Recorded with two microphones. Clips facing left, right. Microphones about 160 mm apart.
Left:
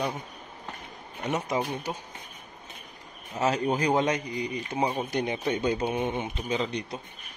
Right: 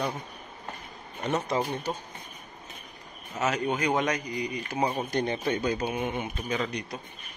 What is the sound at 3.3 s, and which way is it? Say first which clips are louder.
Speech: left 2 dB; 30° left (ahead or behind).